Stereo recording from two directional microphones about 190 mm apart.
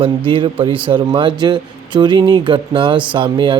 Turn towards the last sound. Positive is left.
turn(degrees=-25)  # may be behind; listen again after turning